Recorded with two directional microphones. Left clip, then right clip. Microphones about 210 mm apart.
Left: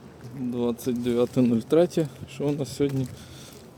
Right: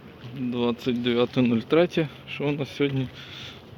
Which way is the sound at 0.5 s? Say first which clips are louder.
Right 1 dB; 10° left (ahead or behind).